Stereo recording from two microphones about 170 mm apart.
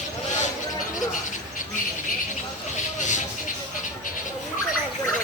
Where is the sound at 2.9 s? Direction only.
45° left (ahead or behind).